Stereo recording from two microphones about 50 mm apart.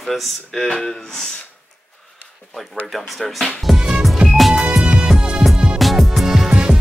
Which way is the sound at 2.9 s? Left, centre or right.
Centre.